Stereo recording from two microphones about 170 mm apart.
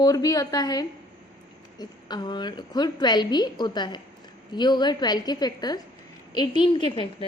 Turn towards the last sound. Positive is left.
turn(degrees=30)  # may be behind; listen again after turning